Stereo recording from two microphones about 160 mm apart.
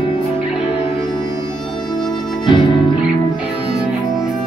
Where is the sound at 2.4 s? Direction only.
30° left (ahead or behind).